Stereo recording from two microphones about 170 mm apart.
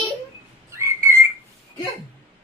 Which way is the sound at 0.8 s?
15° right (ahead or behind).